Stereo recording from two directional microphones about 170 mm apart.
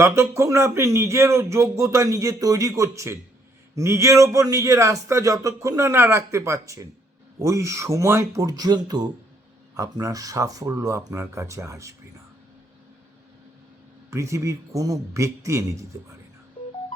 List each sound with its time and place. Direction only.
0.0 s a man's voice: 15° right (ahead or behind)
14.1 s speech: 15° right (ahead or behind)